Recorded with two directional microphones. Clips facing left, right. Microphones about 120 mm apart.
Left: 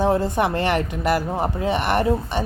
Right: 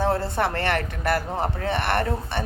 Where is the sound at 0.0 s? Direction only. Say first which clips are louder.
Left 4 dB; 15° left (ahead or behind).